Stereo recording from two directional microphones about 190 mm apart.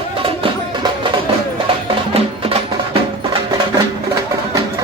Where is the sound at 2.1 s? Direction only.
30° right (ahead or behind).